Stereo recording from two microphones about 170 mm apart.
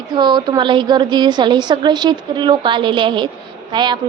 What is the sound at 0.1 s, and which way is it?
A woman's voice, 25° right (ahead or behind).